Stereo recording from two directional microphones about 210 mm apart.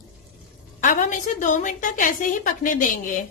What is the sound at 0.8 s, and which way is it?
A woman's voice, 40° left (ahead or behind).